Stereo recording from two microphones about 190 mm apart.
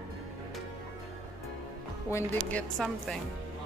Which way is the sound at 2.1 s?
10° left (ahead or behind).